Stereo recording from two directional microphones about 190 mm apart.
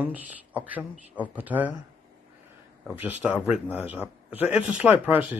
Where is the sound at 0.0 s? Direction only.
10° right (ahead or behind).